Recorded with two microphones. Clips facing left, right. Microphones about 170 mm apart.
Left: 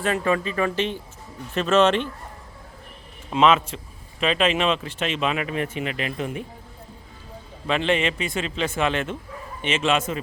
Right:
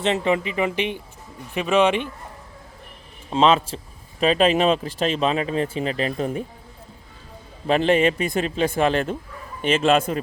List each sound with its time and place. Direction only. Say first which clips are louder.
0.0 s speech: right 2 dB; 20° right (ahead or behind)
3.2 s speech: right 1 dB; 30° right (ahead or behind)
7.7 s speech: right 5 dB; 40° right (ahead or behind)